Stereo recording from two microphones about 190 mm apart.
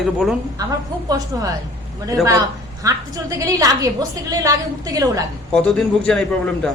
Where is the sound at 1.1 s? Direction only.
20° right (ahead or behind).